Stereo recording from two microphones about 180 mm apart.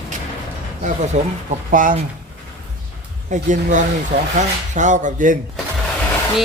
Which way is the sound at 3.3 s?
45° right (ahead or behind).